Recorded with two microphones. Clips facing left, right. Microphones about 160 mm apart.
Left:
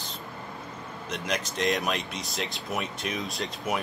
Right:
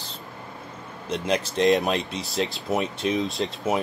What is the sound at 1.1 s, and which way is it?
Speech, 30° right (ahead or behind).